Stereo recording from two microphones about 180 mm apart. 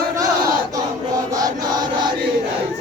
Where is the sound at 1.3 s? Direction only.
20° right (ahead or behind).